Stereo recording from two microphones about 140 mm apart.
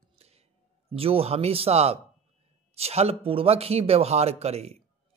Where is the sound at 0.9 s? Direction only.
45° right (ahead or behind).